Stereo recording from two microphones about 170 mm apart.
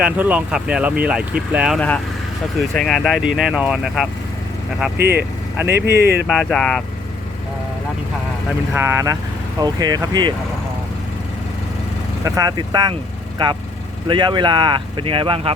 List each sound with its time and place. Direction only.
0.0 s speech: 10° right (ahead or behind)
5.1 s speech: 10° right (ahead or behind)
5.8 s speech: 70° right (ahead or behind)
6.2 s speech: centre (ahead or behind)
8.7 s speech: 15° right (ahead or behind)
12.2 s speech: 20° right (ahead or behind)